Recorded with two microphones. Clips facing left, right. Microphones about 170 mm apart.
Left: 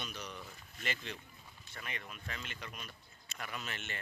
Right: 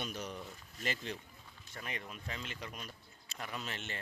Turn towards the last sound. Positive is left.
turn(degrees=-30)  # may be behind; listen again after turning